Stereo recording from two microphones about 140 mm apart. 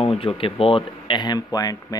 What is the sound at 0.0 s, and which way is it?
Speech, 40° left (ahead or behind).